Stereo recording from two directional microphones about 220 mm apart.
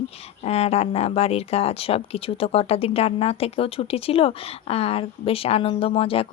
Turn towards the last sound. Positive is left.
turn(degrees=25)  # may be behind; listen again after turning